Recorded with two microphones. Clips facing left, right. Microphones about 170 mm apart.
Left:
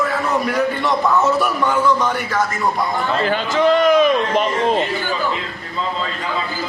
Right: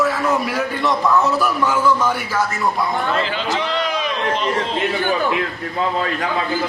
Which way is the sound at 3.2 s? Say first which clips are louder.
Left 6 dB; 50° left (ahead or behind).